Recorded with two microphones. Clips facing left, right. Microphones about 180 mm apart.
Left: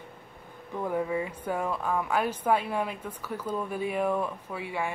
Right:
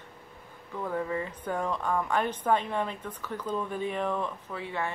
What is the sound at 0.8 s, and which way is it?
Speech, 15° left (ahead or behind).